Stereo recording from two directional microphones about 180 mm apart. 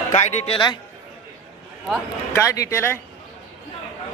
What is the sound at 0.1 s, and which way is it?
Speech, 40° left (ahead or behind).